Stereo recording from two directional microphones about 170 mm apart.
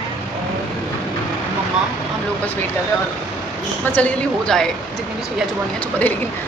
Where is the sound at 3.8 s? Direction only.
10° left (ahead or behind).